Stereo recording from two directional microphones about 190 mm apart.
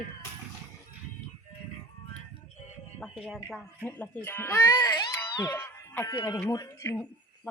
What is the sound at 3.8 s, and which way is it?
Speech, 10° left (ahead or behind).